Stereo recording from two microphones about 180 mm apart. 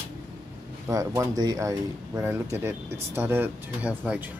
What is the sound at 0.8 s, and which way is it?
Speech, 20° right (ahead or behind).